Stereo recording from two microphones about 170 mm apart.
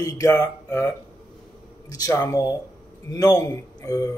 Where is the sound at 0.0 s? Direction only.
20° left (ahead or behind).